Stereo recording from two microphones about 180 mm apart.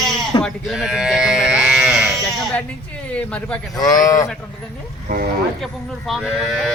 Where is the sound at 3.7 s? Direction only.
20° left (ahead or behind).